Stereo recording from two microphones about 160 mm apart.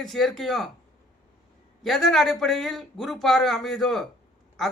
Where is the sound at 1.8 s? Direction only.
Centre (ahead or behind).